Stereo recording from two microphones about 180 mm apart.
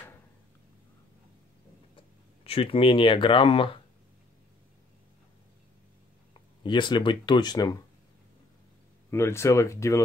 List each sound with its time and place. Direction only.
2.0 s speech: 30° left (ahead or behind)
6.3 s speech: 25° left (ahead or behind)
9.1 s speech: 15° left (ahead or behind)